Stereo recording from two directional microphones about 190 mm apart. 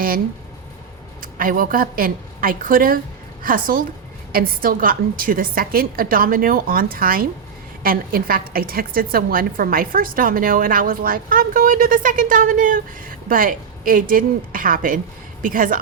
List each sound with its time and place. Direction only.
1.2 s a woman's voice: 45° right (ahead or behind)